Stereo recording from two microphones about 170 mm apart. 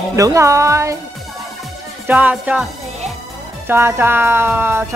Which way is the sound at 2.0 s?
5° right (ahead or behind).